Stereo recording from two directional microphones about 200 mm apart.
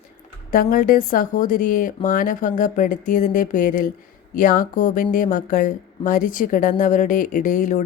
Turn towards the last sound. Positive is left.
turn(degrees=40)  # may be behind; listen again after turning